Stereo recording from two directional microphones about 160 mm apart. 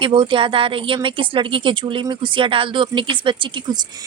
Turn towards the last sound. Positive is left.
turn(degrees=-25)  # may be behind; listen again after turning